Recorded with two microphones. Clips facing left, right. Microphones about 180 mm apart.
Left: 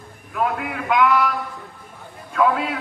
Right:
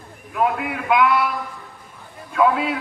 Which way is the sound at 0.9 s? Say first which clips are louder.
Even; 10° right (ahead or behind).